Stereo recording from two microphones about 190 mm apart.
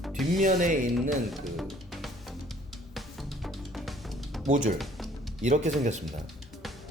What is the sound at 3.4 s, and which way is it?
Music, centre (ahead or behind).